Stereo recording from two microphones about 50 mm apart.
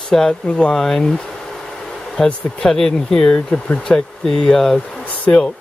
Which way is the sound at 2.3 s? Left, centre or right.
Left.